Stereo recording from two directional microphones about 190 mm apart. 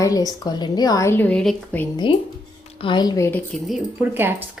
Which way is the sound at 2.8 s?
25° left (ahead or behind).